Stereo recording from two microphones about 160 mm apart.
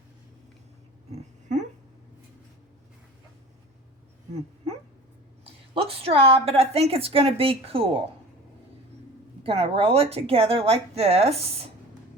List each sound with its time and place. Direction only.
1.1 s a sound: 50° right (ahead or behind)
5.7 s a woman's voice: 35° right (ahead or behind)
9.4 s a woman's voice: 35° right (ahead or behind)